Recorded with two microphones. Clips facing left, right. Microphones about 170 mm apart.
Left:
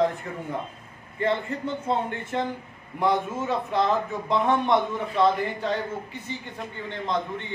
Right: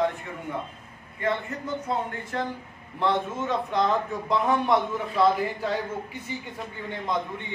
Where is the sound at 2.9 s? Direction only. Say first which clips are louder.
Left 1 dB; 10° left (ahead or behind).